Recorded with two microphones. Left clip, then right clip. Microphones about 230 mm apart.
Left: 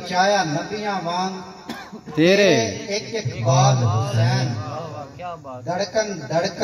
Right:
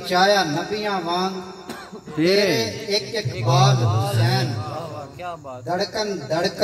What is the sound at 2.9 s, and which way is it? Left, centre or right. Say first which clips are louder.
A man's voice: right 2 dB; right.